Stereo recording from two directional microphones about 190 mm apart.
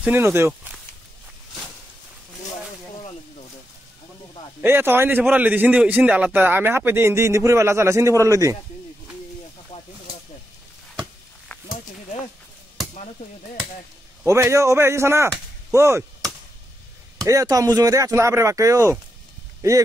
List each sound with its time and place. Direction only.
0.0 s a man's voice: 10° right (ahead or behind)
4.6 s a man's voice: 10° right (ahead or behind)
11.0 s a sound: 5° left (ahead or behind)
14.2 s a man's voice: 15° right (ahead or behind)
17.2 s a man's voice: 20° right (ahead or behind)